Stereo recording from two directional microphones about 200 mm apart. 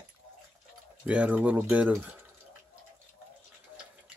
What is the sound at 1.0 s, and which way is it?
Speech, 5° right (ahead or behind).